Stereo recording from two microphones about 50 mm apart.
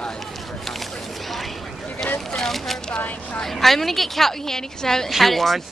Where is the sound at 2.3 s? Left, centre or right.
Centre.